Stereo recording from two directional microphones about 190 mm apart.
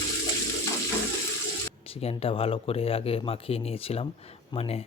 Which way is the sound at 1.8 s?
30° left (ahead or behind).